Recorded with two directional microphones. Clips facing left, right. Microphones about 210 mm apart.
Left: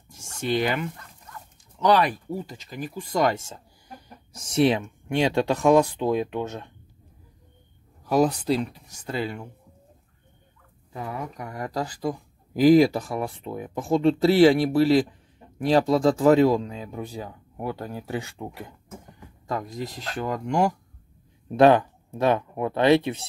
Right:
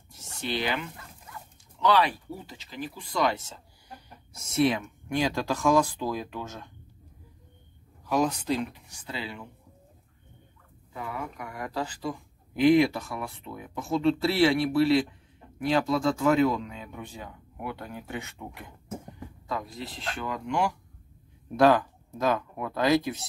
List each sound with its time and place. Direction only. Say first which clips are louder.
0.1 s a sound: left 7 dB; 45° left (ahead or behind)
0.9 s dog: left 1 dB; 5° right (ahead or behind)
1.8 s speech: left 3 dB; 45° left (ahead or behind)
4.4 s speech: left 4 dB; 30° left (ahead or behind)
8.1 s speech: left 5 dB; 35° left (ahead or behind)
10.9 s speech: left 3 dB; 35° left (ahead or behind)
19.4 s speech: left 5 dB; 45° left (ahead or behind)
21.5 s speech: left 4 dB; 25° left (ahead or behind)